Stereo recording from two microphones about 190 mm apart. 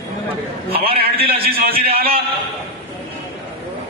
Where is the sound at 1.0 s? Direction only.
55° right (ahead or behind).